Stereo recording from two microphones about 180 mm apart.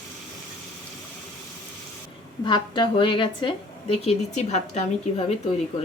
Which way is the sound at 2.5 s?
25° left (ahead or behind).